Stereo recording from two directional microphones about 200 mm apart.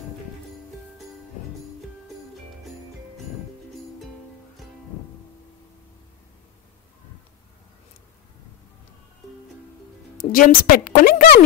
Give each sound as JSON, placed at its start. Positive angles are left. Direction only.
{"t": 10.3, "sound": "a woman's voice", "side_deg": 45}